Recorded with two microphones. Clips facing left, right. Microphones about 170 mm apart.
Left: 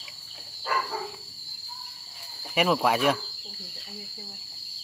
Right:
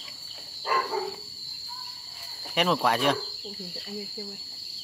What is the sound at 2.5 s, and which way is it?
Speech, 5° left (ahead or behind).